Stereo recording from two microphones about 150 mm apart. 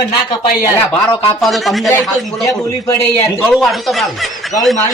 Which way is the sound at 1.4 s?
Centre (ahead or behind).